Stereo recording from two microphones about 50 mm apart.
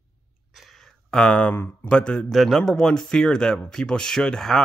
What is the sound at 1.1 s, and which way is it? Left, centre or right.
Speech, left.